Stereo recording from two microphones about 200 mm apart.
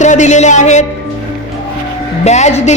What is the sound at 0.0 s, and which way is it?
Speech, 35° left (ahead or behind).